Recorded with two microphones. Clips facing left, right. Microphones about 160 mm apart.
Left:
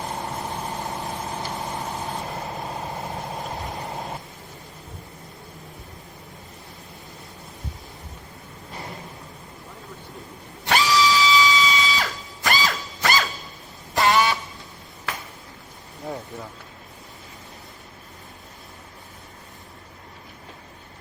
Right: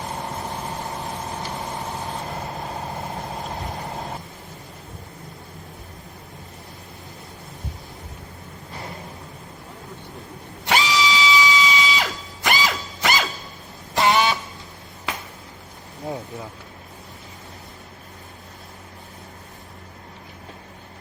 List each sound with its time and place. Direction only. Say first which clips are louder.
3.6 s vehicle: right 1 dB; centre (ahead or behind)
10.7 s a sound: left 1 dB; 20° right (ahead or behind)
13.9 s vehicle: right 1 dB; 20° right (ahead or behind)